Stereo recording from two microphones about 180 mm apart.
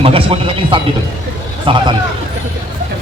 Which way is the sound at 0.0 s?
30° right (ahead or behind).